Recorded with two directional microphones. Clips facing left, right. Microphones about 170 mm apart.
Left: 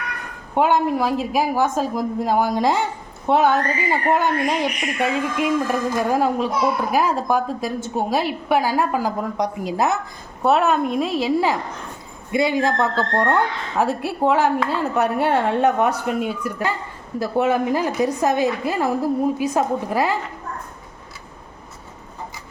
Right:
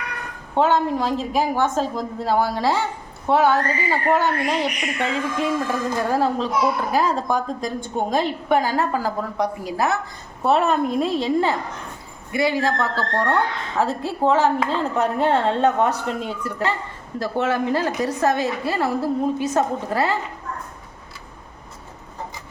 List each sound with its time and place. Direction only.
0.5 s speech: 10° left (ahead or behind)
10.4 s a woman's voice: centre (ahead or behind)
12.3 s a man's voice: 20° left (ahead or behind)